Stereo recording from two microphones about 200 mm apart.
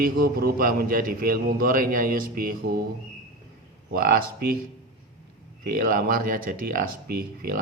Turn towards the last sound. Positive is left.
turn(degrees=-50)  # may be behind; listen again after turning